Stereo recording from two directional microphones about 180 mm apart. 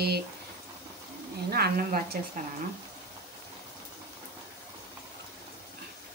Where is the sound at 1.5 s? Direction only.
55° right (ahead or behind).